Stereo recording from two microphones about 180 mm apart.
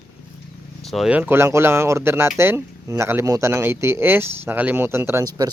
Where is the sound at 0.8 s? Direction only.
Centre (ahead or behind); by 5.5 s 15° right (ahead or behind).